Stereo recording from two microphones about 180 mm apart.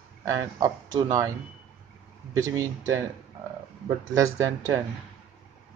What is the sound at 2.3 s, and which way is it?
Speech, 15° right (ahead or behind).